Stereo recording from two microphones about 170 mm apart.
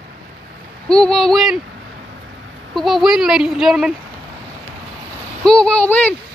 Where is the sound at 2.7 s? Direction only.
Centre (ahead or behind).